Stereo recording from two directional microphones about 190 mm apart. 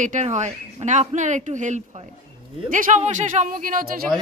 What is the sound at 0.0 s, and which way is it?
Speech, 40° right (ahead or behind).